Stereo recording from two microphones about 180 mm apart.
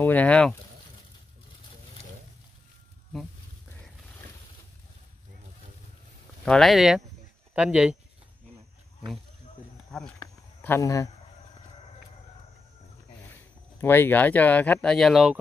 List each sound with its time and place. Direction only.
0.0 s speech: 10° left (ahead or behind)
6.4 s speech: 5° left (ahead or behind)
9.8 s a sound: 5° left (ahead or behind)
10.6 s speech: 15° left (ahead or behind)
13.7 s speech: 10° left (ahead or behind)